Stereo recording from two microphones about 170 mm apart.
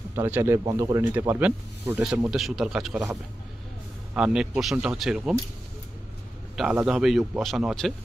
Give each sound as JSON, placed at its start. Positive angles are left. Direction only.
{"t": 0.1, "sound": "speech", "side_deg": -15}
{"t": 2.0, "sound": "speech", "side_deg": 0}
{"t": 4.1, "sound": "speech", "side_deg": -5}
{"t": 6.5, "sound": "a man's voice", "side_deg": 0}